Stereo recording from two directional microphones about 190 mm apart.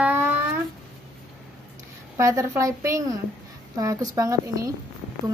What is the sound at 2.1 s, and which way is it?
A woman's voice, 15° right (ahead or behind).